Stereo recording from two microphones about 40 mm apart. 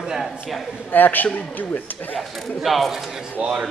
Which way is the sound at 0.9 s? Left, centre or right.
Left.